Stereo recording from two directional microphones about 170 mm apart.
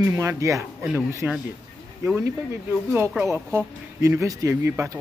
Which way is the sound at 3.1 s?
10° right (ahead or behind).